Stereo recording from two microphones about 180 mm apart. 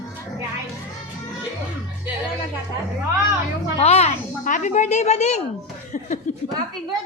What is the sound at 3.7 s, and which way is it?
A woman's voice, 35° left (ahead or behind).